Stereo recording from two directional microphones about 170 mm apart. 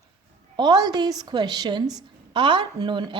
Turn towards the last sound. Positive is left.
turn(degrees=-25)  # may be behind; listen again after turning